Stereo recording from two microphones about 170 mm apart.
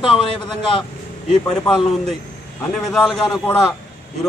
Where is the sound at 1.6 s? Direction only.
30° left (ahead or behind).